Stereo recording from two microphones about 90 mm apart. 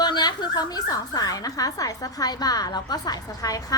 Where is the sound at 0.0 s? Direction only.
55° left (ahead or behind).